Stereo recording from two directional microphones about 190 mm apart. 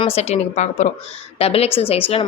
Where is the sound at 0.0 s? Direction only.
35° left (ahead or behind).